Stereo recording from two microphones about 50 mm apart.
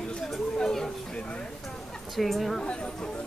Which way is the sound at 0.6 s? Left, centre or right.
Centre.